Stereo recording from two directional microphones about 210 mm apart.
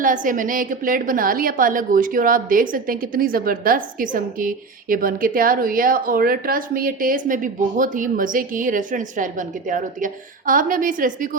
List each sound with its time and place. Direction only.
0.0 s a woman's voice: 40° right (ahead or behind)